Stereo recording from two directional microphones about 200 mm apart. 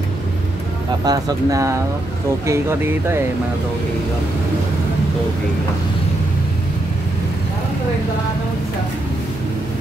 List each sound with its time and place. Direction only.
1.0 s speech: 20° right (ahead or behind)